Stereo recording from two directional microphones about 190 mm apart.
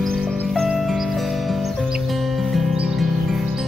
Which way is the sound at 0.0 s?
Centre (ahead or behind).